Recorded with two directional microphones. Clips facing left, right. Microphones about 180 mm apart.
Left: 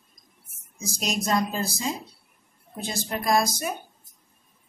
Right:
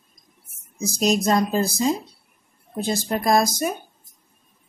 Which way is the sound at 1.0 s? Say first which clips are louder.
Right 6 dB; 40° right (ahead or behind).